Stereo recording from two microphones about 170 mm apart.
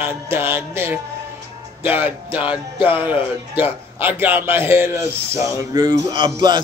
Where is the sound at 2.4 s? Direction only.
30° left (ahead or behind).